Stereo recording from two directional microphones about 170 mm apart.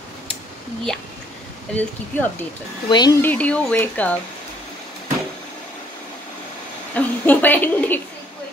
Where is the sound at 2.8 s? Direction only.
25° left (ahead or behind).